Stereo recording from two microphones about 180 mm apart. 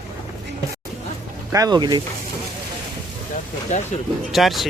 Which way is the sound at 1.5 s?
20° right (ahead or behind).